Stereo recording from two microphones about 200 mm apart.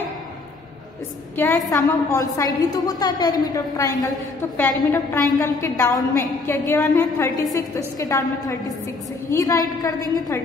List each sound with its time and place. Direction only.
1.3 s a woman's voice: 10° left (ahead or behind)